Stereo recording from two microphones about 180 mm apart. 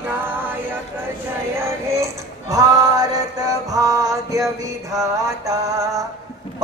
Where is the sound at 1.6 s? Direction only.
15° right (ahead or behind).